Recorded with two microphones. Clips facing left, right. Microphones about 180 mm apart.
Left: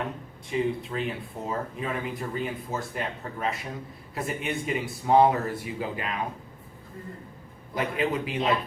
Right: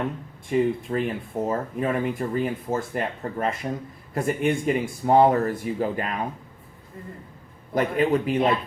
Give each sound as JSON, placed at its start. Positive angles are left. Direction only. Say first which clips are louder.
{"t": 0.4, "sound": "speech", "louder": "right 5 dB", "side_deg": -50}
{"t": 7.7, "sound": "speech", "louder": "right 6 dB", "side_deg": -45}